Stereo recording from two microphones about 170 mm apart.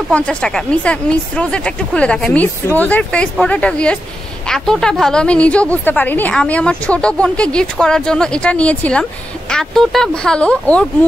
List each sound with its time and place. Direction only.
0.1 s a woman's voice: 5° left (ahead or behind)